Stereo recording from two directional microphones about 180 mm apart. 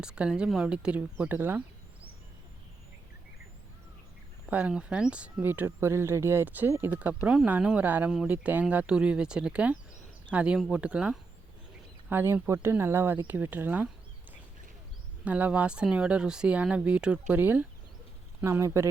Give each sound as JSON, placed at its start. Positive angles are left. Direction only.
{"t": 0.0, "sound": "speech", "side_deg": -5}
{"t": 4.4, "sound": "speech", "side_deg": -10}
{"t": 15.2, "sound": "speech", "side_deg": -10}